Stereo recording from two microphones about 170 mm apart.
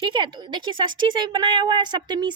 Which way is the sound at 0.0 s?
30° right (ahead or behind).